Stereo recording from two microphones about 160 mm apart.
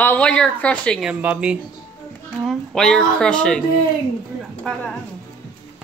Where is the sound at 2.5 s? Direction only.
5° left (ahead or behind).